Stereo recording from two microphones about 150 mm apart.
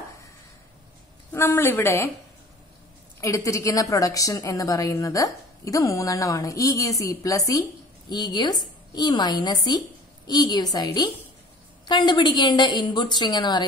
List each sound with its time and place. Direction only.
1.3 s a woman's voice: 15° left (ahead or behind)
3.2 s a woman's voice: 20° left (ahead or behind)